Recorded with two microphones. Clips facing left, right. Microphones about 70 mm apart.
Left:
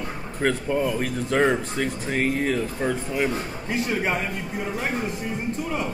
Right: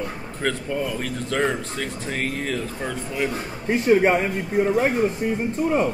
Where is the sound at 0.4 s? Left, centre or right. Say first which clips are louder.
Left 2 dB; centre.